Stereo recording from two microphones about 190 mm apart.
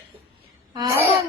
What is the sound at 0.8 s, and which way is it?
Laughter, 15° right (ahead or behind).